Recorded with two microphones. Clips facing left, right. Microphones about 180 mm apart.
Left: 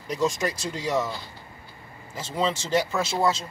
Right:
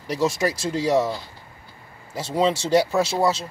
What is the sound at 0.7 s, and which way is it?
Speech, 35° right (ahead or behind).